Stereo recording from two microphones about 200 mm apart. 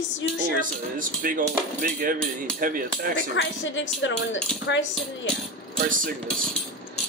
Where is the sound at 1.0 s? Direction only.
45° right (ahead or behind).